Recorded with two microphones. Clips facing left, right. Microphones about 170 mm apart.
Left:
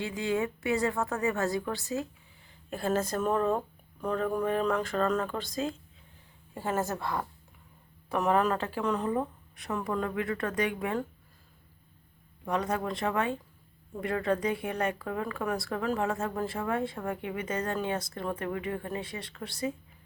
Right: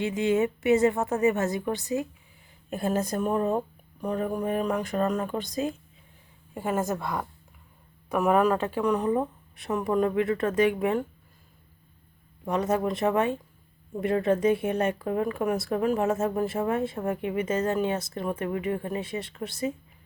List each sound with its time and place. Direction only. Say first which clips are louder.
0.0 s speech: right 6 dB; 20° right (ahead or behind)
12.5 s speech: right 5 dB; 25° right (ahead or behind)